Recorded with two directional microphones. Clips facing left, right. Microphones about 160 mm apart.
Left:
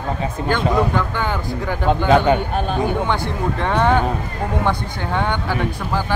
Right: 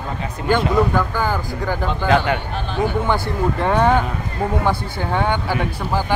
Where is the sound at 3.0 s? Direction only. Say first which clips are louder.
Right 2 dB; 10° right (ahead or behind).